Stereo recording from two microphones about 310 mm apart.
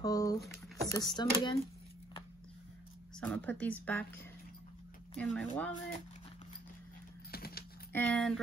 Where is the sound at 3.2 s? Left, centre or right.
Centre.